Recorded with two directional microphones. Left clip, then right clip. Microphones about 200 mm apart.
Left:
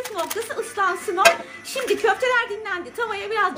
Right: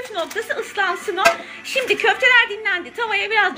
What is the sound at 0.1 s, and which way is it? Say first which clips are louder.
A woman's voice: right 6 dB; centre (ahead or behind).